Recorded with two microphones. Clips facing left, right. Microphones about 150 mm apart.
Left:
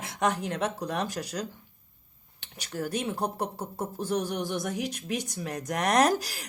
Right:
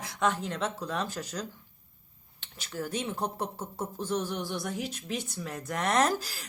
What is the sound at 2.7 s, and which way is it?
Speech, 15° left (ahead or behind).